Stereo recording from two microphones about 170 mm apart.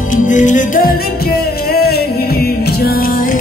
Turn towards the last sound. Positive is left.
turn(degrees=65)  # may be behind; listen again after turning